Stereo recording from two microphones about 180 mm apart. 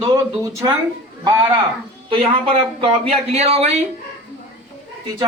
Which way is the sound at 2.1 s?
30° right (ahead or behind).